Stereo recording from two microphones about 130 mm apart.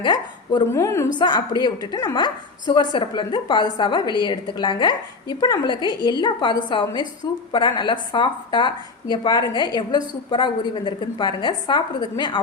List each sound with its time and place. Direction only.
0.0 s speech: 35° left (ahead or behind)
0.7 s a woman's voice: 20° left (ahead or behind)
1.2 s speech: 35° left (ahead or behind)